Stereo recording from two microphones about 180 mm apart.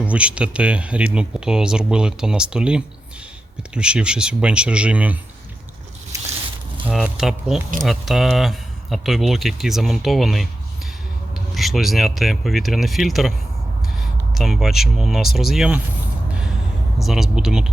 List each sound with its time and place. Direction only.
0.0 s speech: 5° right (ahead or behind)
6.1 s a sound: 15° right (ahead or behind)
6.8 s speech: 5° right (ahead or behind)
11.5 s speech: centre (ahead or behind)
17.0 s speech: centre (ahead or behind)